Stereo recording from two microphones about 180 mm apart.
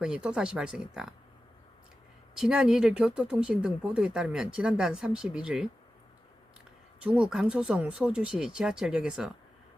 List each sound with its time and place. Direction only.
0.0 s speech: 5° right (ahead or behind)
2.4 s speech: 5° right (ahead or behind)
7.0 s speech: 5° right (ahead or behind)